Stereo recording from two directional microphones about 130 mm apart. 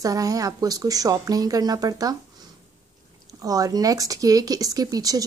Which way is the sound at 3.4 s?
30° right (ahead or behind).